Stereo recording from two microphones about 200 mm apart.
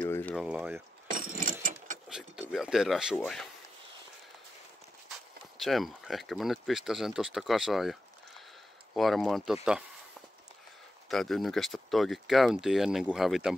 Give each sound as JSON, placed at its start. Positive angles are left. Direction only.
{"t": 0.0, "sound": "a sound", "side_deg": 10}
{"t": 0.4, "sound": "speech", "side_deg": -5}
{"t": 1.1, "sound": "gears", "side_deg": -40}
{"t": 2.0, "sound": "speech", "side_deg": -5}
{"t": 5.6, "sound": "speech", "side_deg": 0}
{"t": 11.1, "sound": "speech", "side_deg": 0}